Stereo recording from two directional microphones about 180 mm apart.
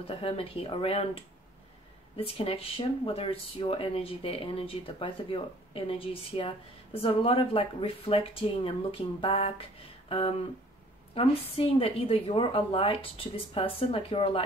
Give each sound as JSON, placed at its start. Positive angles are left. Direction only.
{"t": 0.0, "sound": "speech", "side_deg": 30}
{"t": 10.0, "sound": "a sound", "side_deg": 30}
{"t": 11.1, "sound": "speech", "side_deg": 30}